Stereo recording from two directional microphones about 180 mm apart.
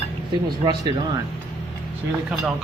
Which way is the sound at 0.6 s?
25° right (ahead or behind).